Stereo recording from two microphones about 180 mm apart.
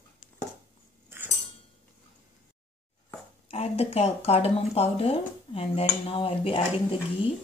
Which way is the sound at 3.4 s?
35° left (ahead or behind).